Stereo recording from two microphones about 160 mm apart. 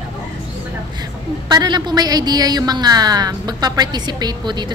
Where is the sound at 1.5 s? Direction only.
25° right (ahead or behind).